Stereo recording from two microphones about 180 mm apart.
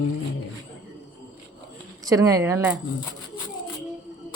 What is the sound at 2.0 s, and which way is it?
Speech, 20° right (ahead or behind).